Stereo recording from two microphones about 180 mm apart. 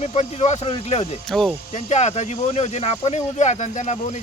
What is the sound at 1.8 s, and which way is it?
Speech, 40° left (ahead or behind).